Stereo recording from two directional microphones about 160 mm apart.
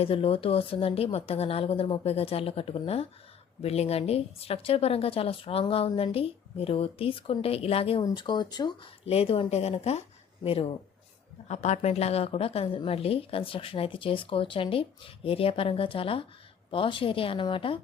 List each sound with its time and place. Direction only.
0.0 s a woman's voice: 35° left (ahead or behind)
9.0 s a woman's voice: 40° left (ahead or behind)
11.4 s a woman's voice: 45° left (ahead or behind)